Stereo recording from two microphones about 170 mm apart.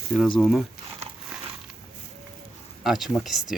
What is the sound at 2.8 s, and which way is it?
Speech, centre (ahead or behind).